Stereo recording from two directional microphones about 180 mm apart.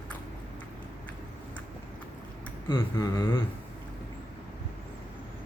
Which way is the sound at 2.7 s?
20° left (ahead or behind).